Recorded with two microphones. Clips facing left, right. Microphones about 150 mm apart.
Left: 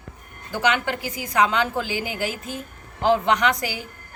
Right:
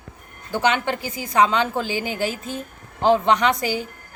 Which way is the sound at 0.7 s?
25° right (ahead or behind).